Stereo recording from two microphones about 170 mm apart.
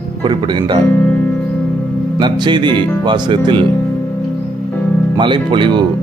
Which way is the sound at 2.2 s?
25° right (ahead or behind).